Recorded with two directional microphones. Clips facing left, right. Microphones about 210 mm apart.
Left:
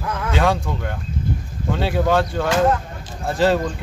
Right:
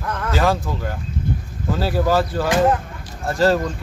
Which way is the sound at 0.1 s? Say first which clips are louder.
Even; centre (ahead or behind).